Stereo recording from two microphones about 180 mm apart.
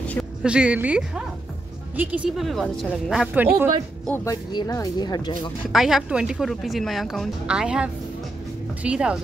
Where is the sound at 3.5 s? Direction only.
15° right (ahead or behind).